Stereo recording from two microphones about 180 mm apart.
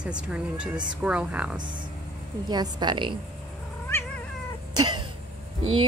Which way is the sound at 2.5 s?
25° right (ahead or behind).